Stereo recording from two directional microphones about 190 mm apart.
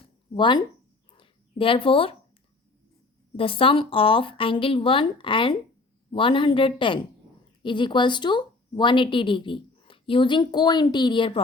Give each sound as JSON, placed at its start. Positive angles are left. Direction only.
{"t": 0.3, "sound": "a woman's voice", "side_deg": 25}
{"t": 1.1, "sound": "a sound", "side_deg": 25}
{"t": 3.3, "sound": "a woman's voice", "side_deg": 30}